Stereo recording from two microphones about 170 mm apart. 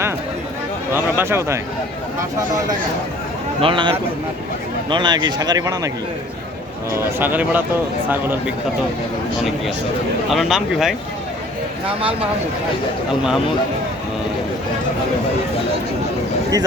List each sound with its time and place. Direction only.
0.9 s speech: 15° right (ahead or behind)
3.6 s a man's voice: 30° right (ahead or behind)
6.9 s speech: 15° right (ahead or behind)
10.2 s speech: centre (ahead or behind)